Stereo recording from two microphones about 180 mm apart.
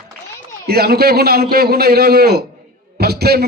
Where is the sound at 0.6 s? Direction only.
60° right (ahead or behind).